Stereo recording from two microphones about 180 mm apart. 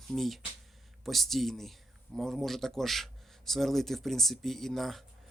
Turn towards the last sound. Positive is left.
turn(degrees=0)  # may be behind; listen again after turning